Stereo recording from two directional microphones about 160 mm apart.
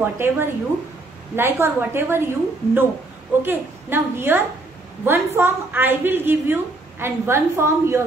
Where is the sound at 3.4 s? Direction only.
15° right (ahead or behind).